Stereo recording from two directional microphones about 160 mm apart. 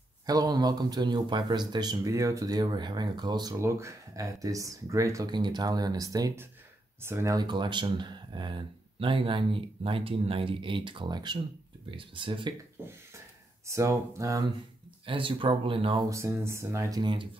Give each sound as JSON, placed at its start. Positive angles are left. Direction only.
{"t": 0.3, "sound": "a man's voice", "side_deg": -25}
{"t": 13.7, "sound": "a man's voice", "side_deg": -20}
{"t": 15.0, "sound": "speech", "side_deg": -35}
{"t": 16.1, "sound": "speech", "side_deg": -15}
{"t": 17.0, "sound": "a man's voice", "side_deg": -30}